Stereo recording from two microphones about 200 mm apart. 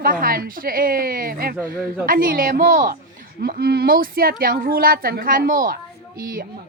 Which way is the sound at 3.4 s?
50° right (ahead or behind).